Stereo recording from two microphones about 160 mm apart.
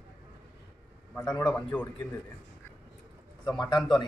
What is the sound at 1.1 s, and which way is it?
Speech, 5° left (ahead or behind).